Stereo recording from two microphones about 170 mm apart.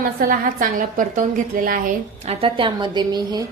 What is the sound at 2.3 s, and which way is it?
A woman's voice, 30° right (ahead or behind).